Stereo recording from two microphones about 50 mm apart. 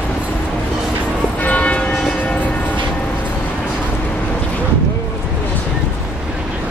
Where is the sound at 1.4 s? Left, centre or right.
Left.